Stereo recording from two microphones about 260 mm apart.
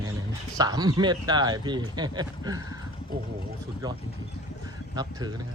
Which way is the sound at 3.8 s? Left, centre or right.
Centre.